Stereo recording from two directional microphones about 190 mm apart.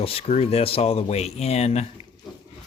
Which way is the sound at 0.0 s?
30° left (ahead or behind).